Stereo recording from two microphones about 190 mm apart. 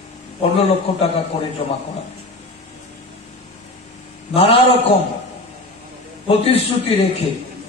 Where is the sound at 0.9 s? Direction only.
30° left (ahead or behind).